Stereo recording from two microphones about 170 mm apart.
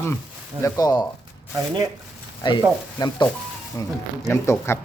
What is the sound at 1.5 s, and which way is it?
Speech, 25° right (ahead or behind).